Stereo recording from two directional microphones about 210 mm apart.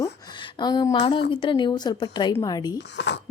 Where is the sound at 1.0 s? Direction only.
25° left (ahead or behind).